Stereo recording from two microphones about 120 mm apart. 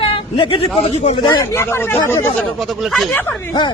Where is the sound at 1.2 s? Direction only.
40° left (ahead or behind).